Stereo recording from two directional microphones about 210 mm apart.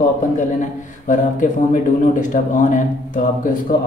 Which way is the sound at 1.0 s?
40° left (ahead or behind).